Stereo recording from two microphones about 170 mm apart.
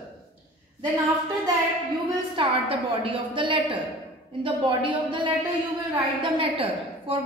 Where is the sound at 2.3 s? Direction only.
30° right (ahead or behind).